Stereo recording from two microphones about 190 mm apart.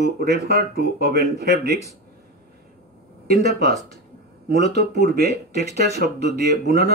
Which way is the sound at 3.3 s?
60° right (ahead or behind).